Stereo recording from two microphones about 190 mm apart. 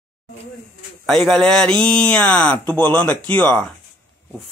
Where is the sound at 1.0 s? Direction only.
Centre (ahead or behind).